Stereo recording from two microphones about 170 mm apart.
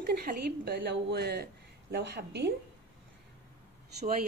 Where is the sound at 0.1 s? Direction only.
60° right (ahead or behind); by 2.5 s 85° right.